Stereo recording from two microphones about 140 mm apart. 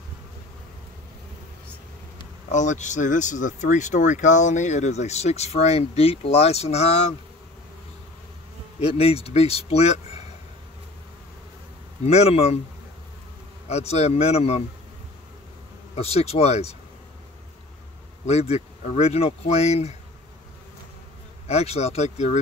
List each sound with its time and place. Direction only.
2.5 s speech: 60° left (ahead or behind)
8.7 s speech: 45° left (ahead or behind)
12.0 s speech: 50° left (ahead or behind)
13.7 s speech: 50° left (ahead or behind)
15.9 s speech: 45° left (ahead or behind)
18.2 s speech: 50° left (ahead or behind)
21.5 s speech: 50° left (ahead or behind)